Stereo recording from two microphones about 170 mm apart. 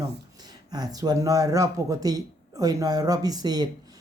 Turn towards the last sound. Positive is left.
turn(degrees=-25)  # may be behind; listen again after turning